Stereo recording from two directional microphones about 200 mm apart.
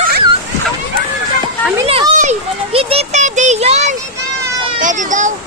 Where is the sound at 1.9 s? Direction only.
35° right (ahead or behind).